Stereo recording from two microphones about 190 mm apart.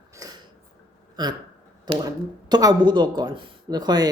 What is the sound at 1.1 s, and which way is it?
Speech, 20° right (ahead or behind).